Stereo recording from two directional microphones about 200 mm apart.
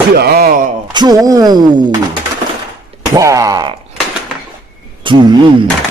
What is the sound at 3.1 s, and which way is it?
Speech, 15° right (ahead or behind).